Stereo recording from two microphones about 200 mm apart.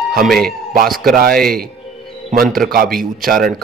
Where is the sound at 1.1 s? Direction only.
50° right (ahead or behind).